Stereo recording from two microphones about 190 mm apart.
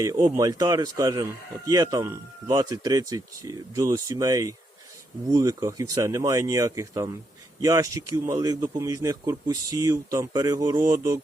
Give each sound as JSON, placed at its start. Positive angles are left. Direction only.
{"t": 0.0, "sound": "speech", "side_deg": -20}